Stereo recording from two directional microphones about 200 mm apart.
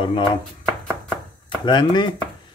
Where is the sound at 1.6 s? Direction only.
20° left (ahead or behind).